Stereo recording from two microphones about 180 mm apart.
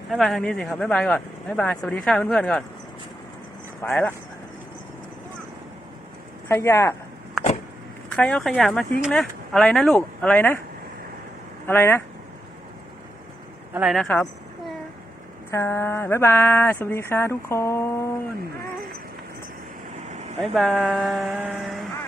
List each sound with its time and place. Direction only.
0.1 s speech: centre (ahead or behind)
3.8 s speech: 15° left (ahead or behind)
6.5 s speech: 15° left (ahead or behind)
8.1 s speech: 5° left (ahead or behind)
11.6 s speech: 10° left (ahead or behind)
13.7 s speech: centre (ahead or behind)
15.4 s speech: 15° left (ahead or behind)
20.0 s vehicle: 40° right (ahead or behind)
20.4 s speech: centre (ahead or behind)